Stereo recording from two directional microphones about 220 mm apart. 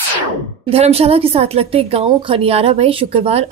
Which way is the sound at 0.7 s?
25° right (ahead or behind).